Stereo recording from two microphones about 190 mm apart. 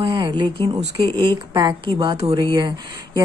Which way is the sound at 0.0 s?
25° right (ahead or behind).